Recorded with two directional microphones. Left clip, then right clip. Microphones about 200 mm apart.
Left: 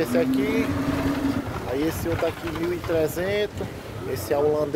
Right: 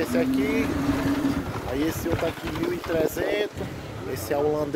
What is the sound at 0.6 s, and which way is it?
Vehicle, 55° right (ahead or behind).